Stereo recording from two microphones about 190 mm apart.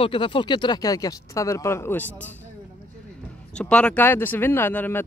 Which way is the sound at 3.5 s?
5° left (ahead or behind).